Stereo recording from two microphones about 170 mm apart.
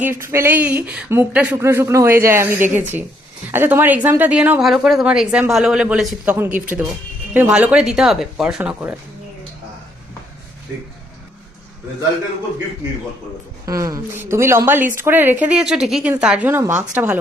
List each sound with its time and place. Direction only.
0.0 s speech: 15° right (ahead or behind)
13.7 s speech: 20° right (ahead or behind)